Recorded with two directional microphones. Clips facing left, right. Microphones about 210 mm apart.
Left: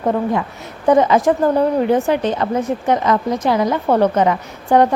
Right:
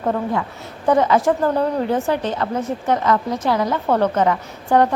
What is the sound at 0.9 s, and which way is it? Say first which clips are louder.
A woman's voice: left 3 dB; 20° left (ahead or behind).